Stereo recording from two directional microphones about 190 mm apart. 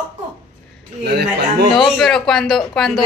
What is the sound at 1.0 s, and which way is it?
Speech, 60° right (ahead or behind).